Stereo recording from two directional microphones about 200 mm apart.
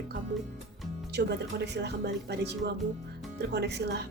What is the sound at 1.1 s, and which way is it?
A woman's voice, 55° right (ahead or behind).